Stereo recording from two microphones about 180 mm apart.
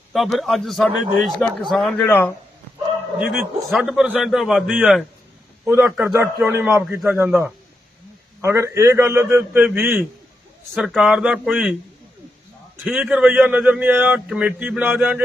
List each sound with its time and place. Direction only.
0.1 s a man's voice: centre (ahead or behind)
3.2 s a man's voice: centre (ahead or behind)
10.8 s a man's voice: centre (ahead or behind)
12.8 s a man's voice: centre (ahead or behind)